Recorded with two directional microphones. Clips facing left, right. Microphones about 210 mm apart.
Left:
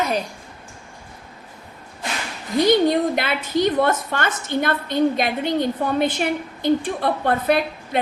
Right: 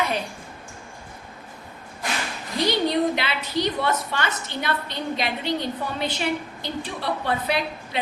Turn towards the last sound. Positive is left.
turn(degrees=50)  # may be behind; listen again after turning